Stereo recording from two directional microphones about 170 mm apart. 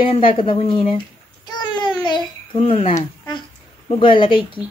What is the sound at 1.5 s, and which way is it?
Babbling, 25° left (ahead or behind).